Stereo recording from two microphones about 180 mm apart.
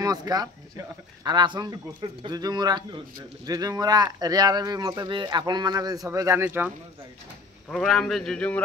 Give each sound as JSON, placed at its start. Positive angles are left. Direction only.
{"t": 0.0, "sound": "speech", "side_deg": -20}
{"t": 7.7, "sound": "a man's voice", "side_deg": 5}